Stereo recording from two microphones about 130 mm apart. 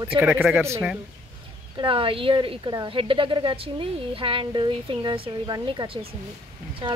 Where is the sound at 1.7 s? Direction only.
40° right (ahead or behind).